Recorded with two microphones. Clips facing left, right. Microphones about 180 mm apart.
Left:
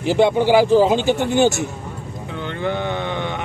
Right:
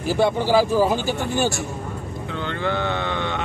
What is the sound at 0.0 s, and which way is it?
Speech, 20° left (ahead or behind).